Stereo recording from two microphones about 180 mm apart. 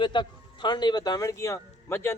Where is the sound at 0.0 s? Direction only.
25° left (ahead or behind).